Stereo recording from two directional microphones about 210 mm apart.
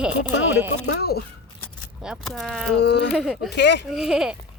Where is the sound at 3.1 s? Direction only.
Centre (ahead or behind).